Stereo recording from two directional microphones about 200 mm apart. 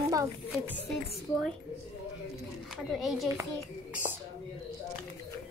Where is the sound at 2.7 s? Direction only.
Centre (ahead or behind).